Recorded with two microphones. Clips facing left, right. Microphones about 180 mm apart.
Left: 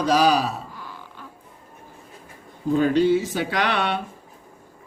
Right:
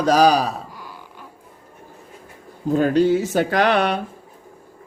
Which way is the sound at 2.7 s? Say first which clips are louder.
Right 2 dB; 45° right (ahead or behind).